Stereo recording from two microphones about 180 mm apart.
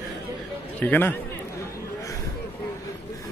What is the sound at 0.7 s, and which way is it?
Speech, 10° left (ahead or behind).